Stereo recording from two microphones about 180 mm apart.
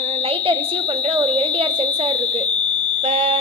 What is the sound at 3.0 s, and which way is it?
Speech, 30° right (ahead or behind).